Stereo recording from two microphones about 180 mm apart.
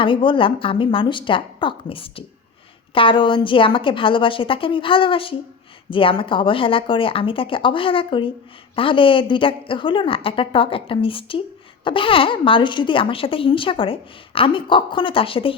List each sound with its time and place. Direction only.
0.0 s speech: 30° left (ahead or behind)